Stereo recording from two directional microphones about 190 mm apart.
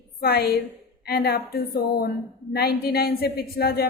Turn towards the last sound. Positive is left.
turn(degrees=55)  # may be behind; listen again after turning